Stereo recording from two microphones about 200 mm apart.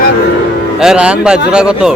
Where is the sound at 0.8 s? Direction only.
5° right (ahead or behind).